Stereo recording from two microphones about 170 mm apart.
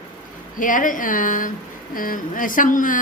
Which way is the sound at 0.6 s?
50° left (ahead or behind).